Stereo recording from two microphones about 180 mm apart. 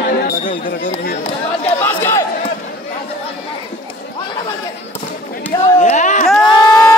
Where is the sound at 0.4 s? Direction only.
45° left (ahead or behind).